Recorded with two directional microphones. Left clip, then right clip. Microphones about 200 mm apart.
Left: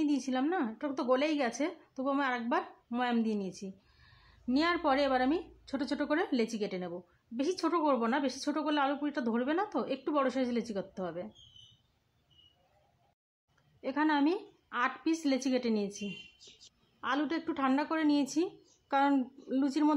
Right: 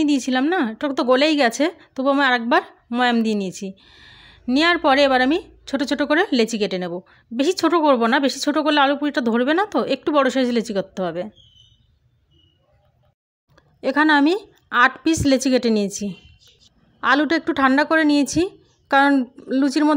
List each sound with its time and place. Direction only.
0.0 s a woman's voice: 30° right (ahead or behind)
13.6 s a woman's voice: 30° right (ahead or behind)